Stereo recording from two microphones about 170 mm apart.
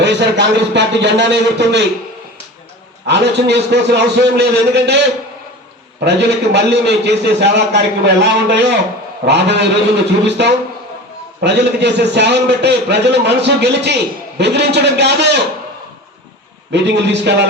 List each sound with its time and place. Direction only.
0.0 s a man's voice: 90° right
3.1 s a man's voice: 90° right
6.1 s a man's voice: 90° right
16.7 s a man's voice: 90° right